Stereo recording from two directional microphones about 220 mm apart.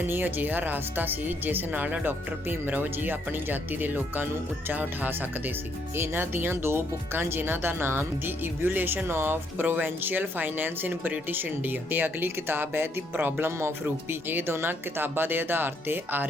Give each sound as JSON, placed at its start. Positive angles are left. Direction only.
{"t": 0.0, "sound": "speech", "side_deg": -10}